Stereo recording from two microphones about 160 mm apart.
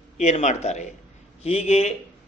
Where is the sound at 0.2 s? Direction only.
50° left (ahead or behind).